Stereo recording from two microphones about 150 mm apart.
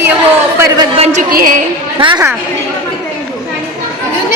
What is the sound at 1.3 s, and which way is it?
Speech, 65° right (ahead or behind).